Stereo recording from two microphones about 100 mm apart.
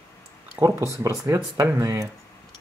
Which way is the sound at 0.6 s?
30° right (ahead or behind).